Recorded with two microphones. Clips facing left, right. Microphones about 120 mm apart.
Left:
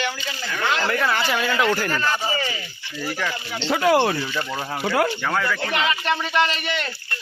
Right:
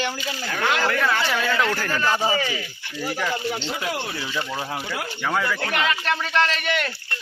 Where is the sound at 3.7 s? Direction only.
65° left (ahead or behind).